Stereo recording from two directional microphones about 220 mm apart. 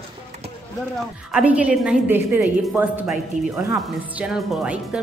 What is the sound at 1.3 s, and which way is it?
Speech, 5° right (ahead or behind).